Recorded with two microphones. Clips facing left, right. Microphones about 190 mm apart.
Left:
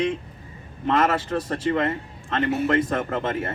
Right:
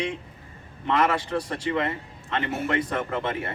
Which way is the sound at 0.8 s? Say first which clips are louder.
Left 2 dB; 40° left (ahead or behind).